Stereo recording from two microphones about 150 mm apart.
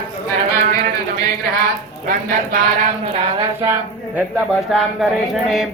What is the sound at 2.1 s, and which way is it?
Speech, 70° right (ahead or behind).